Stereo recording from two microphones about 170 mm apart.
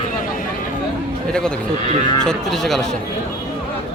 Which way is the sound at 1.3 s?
5° left (ahead or behind).